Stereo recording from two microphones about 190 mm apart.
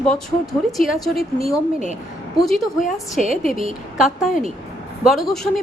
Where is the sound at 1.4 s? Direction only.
35° right (ahead or behind).